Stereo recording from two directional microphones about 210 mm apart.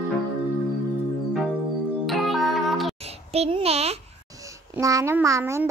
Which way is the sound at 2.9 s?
30° right (ahead or behind).